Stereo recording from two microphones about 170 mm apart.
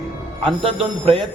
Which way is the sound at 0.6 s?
30° right (ahead or behind).